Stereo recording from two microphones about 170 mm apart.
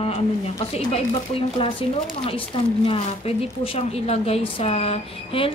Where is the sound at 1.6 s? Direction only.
35° left (ahead or behind).